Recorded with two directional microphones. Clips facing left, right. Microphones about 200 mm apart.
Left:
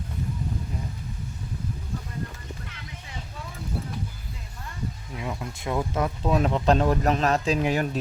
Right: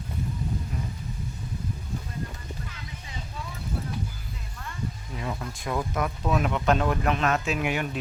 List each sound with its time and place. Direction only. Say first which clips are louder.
5.1 s speech: even; 10° left (ahead or behind); by 7.9 s 35° left (ahead or behind)